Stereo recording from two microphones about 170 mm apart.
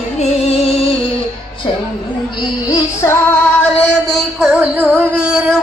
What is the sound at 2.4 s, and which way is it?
Music, 20° left (ahead or behind).